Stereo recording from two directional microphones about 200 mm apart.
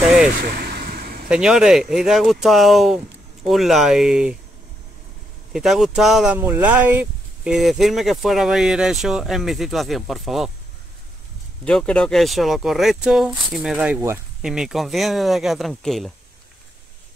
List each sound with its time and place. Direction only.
0.6 s vehicle: 50° right (ahead or behind)
1.3 s speech: 5° right (ahead or behind)
5.5 s speech: centre (ahead or behind)
11.6 s speech: 5° left (ahead or behind)